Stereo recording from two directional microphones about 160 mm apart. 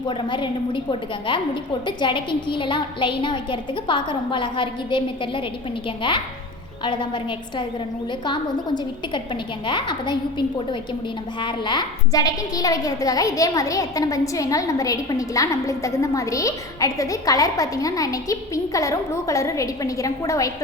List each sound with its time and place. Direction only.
0.1 s a woman's voice: 30° left (ahead or behind)